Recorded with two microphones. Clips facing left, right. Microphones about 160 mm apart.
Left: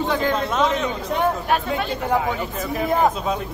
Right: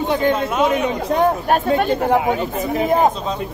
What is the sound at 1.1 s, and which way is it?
Speech, 40° right (ahead or behind).